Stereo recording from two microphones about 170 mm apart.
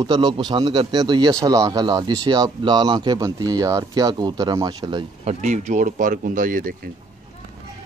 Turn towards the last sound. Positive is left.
turn(degrees=-55)  # may be behind; listen again after turning